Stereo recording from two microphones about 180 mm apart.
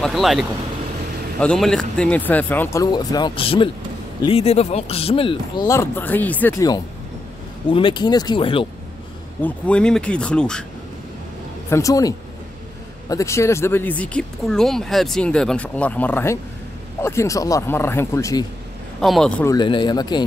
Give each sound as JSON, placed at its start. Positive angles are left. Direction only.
{"t": 0.0, "sound": "a man's voice", "side_deg": 0}
{"t": 5.7, "sound": "speech", "side_deg": 15}
{"t": 7.7, "sound": "speech", "side_deg": 25}
{"t": 9.4, "sound": "speech", "side_deg": 5}
{"t": 11.7, "sound": "speech", "side_deg": 20}
{"t": 18.9, "sound": "speech", "side_deg": 0}
{"t": 19.4, "sound": "speech", "side_deg": 25}